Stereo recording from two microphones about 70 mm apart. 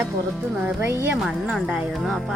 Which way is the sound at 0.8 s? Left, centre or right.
Right.